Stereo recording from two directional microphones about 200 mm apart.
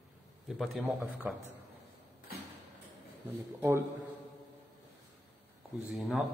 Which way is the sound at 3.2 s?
10° right (ahead or behind).